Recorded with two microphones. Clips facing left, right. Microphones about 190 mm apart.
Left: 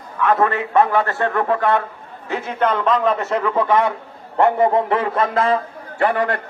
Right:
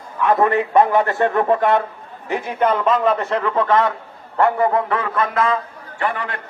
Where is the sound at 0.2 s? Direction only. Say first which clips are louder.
Right 1 dB; 15° right (ahead or behind); by 5.5 s 30° left (ahead or behind).